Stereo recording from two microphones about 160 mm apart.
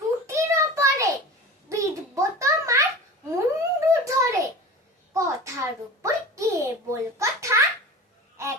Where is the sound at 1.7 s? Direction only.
20° right (ahead or behind).